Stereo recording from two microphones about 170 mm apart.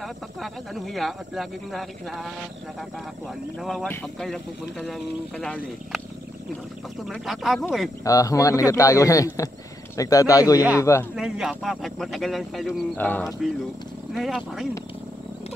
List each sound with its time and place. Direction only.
0.0 s speech: centre (ahead or behind)
3.5 s speech: centre (ahead or behind)
3.8 s speech: 10° left (ahead or behind)
4.2 s speech: centre (ahead or behind)
8.0 s a man's voice: 20° left (ahead or behind)
11.1 s speech: 5° right (ahead or behind)